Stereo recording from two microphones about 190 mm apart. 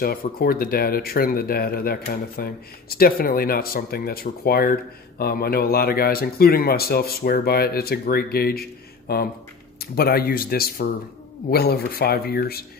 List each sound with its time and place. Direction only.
0.0 s speech: 50° left (ahead or behind)